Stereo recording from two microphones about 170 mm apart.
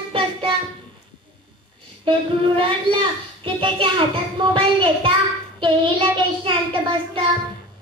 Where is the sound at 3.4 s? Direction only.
30° right (ahead or behind).